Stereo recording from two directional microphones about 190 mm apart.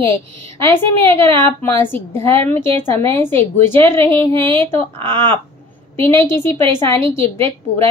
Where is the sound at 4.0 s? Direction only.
30° right (ahead or behind).